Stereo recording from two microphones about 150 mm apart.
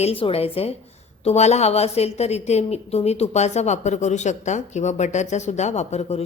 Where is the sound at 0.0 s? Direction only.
40° left (ahead or behind).